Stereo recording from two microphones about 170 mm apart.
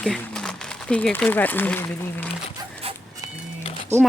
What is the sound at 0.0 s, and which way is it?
Speech, 5° left (ahead or behind).